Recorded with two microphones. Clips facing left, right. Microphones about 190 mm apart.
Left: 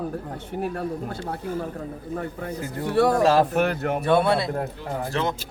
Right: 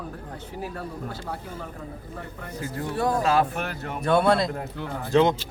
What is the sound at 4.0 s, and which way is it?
Speech, 5° left (ahead or behind).